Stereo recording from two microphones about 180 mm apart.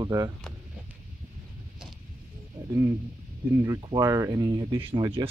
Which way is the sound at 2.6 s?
10° right (ahead or behind).